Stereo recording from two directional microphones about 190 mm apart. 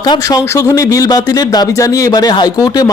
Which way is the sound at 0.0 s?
20° left (ahead or behind).